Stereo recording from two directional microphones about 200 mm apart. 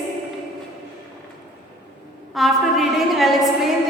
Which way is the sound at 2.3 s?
Centre (ahead or behind).